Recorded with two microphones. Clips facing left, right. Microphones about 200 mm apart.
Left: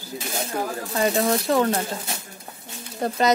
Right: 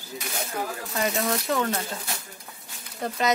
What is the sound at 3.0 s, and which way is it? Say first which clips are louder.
Speech: left 5 dB; 35° left (ahead or behind).